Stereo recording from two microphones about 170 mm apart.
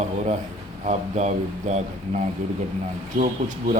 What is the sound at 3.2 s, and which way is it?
Speech, 50° right (ahead or behind).